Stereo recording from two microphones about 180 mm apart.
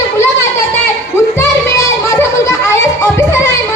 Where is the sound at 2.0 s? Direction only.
15° left (ahead or behind).